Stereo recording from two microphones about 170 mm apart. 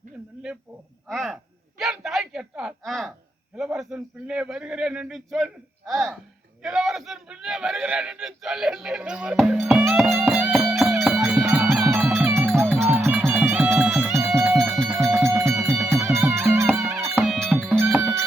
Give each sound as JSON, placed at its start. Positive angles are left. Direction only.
{"t": 1.0, "sound": "a man's voice", "side_deg": 0}
{"t": 1.8, "sound": "a sound", "side_deg": 0}
{"t": 3.6, "sound": "a man's voice", "side_deg": -5}
{"t": 10.1, "sound": "music", "side_deg": -10}
{"t": 14.2, "sound": "music", "side_deg": -15}
{"t": 14.5, "sound": "music", "side_deg": 0}
{"t": 14.8, "sound": "music", "side_deg": -10}
{"t": 16.6, "sound": "music", "side_deg": -5}
{"t": 17.6, "sound": "music", "side_deg": -10}